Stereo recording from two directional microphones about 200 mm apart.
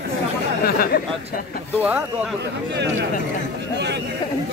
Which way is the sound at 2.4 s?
60° right (ahead or behind).